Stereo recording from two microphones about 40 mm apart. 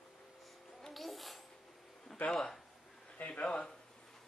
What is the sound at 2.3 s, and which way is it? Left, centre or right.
Speech, centre.